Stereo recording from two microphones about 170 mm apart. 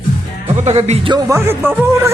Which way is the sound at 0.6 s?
40° right (ahead or behind).